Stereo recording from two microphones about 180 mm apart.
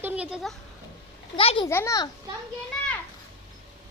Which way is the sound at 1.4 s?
30° left (ahead or behind).